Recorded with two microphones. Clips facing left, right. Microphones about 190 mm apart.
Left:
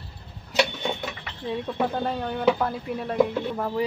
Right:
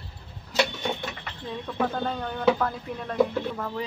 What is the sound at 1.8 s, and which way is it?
Speech, 10° left (ahead or behind).